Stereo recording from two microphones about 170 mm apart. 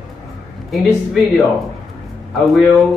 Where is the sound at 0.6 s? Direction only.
Centre (ahead or behind).